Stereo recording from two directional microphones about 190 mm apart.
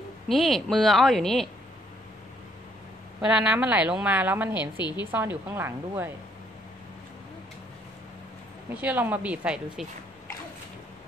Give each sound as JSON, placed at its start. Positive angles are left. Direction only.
{"t": 0.3, "sound": "a woman's voice", "side_deg": 0}
{"t": 3.2, "sound": "a woman's voice", "side_deg": -5}
{"t": 4.7, "sound": "a woman's voice", "side_deg": 20}
{"t": 5.1, "sound": "a woman's voice", "side_deg": -10}
{"t": 8.6, "sound": "a woman's voice", "side_deg": -10}